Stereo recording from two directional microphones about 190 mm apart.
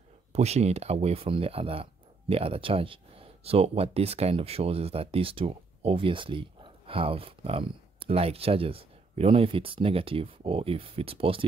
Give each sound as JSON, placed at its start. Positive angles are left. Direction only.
{"t": 0.3, "sound": "speech", "side_deg": -35}